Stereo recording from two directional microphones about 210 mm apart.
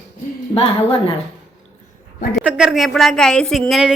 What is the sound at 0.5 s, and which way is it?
Speech, 30° left (ahead or behind).